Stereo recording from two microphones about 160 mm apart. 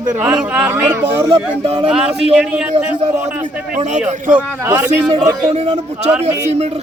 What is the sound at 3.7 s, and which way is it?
Speech, 45° right (ahead or behind).